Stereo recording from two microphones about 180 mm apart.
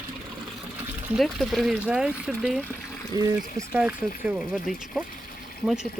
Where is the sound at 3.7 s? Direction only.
5° right (ahead or behind).